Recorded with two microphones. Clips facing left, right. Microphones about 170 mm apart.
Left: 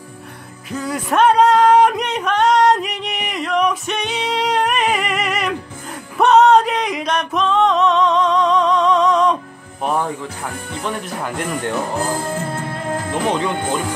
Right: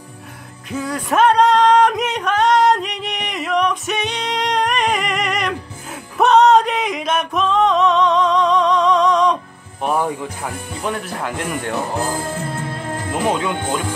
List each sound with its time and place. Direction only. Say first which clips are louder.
0.7 s music: even; centre (ahead or behind)
9.8 s speech: right 1 dB; 5° right (ahead or behind)
13.3 s speech: left 1 dB; 5° right (ahead or behind)